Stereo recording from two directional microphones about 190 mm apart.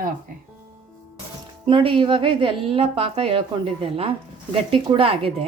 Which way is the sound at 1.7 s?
25° right (ahead or behind).